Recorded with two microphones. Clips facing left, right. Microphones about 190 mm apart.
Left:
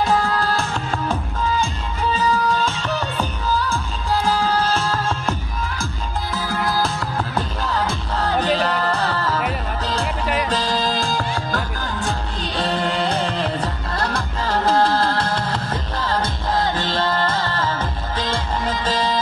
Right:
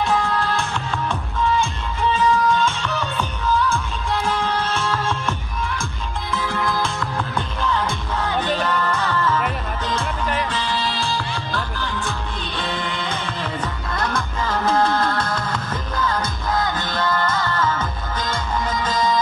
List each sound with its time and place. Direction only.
0.0 s music: 40° left (ahead or behind)
2.1 s music: 40° left (ahead or behind)
6.3 s music: 40° left (ahead or behind)
10.5 s music: 40° left (ahead or behind)